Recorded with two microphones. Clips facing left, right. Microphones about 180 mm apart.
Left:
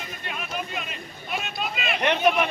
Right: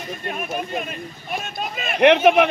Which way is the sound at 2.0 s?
65° right (ahead or behind).